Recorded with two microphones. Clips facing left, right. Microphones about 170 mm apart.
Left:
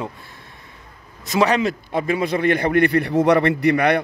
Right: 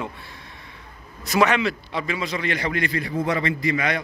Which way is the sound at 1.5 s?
45° left (ahead or behind).